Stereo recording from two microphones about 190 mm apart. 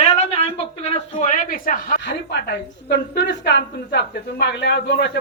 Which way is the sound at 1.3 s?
45° left (ahead or behind).